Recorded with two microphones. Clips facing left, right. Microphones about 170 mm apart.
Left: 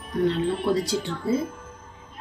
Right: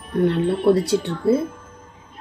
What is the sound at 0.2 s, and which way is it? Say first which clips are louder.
A woman's voice: right 5 dB; 60° right (ahead or behind).